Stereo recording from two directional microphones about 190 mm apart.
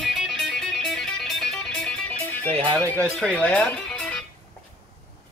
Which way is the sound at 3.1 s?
5° left (ahead or behind).